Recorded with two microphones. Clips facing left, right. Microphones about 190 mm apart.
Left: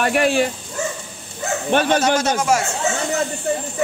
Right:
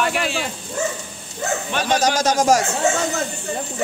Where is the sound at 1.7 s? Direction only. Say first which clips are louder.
Left 6 dB; 55° left (ahead or behind).